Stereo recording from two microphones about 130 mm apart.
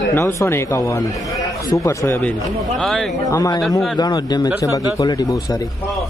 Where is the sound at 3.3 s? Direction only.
25° left (ahead or behind).